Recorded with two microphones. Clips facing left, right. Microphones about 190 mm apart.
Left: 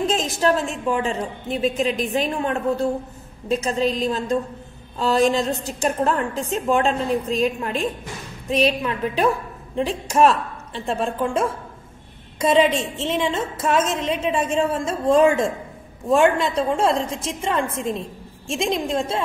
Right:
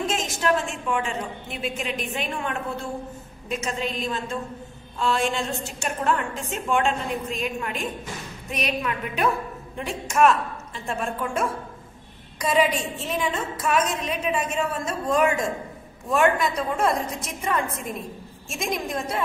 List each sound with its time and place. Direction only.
0.0 s a woman's voice: 35° left (ahead or behind)